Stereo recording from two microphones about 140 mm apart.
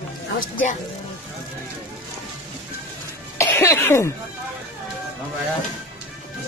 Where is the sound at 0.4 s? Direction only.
70° left (ahead or behind).